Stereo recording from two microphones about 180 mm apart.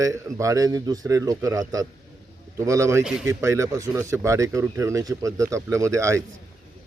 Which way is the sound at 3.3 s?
15° right (ahead or behind).